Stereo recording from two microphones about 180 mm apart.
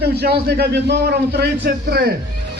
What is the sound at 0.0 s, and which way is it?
A man's voice, 65° right (ahead or behind).